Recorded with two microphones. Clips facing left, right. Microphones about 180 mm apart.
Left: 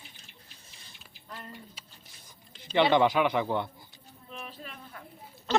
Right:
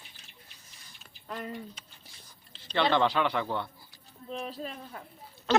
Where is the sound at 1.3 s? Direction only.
70° right (ahead or behind).